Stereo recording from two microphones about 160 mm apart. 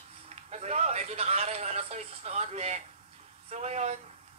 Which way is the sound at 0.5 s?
45° right (ahead or behind).